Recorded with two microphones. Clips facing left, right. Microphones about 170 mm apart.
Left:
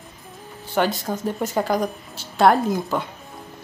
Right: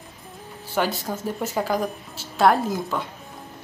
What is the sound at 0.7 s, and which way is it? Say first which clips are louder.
Speech: left 3 dB; 5° right (ahead or behind).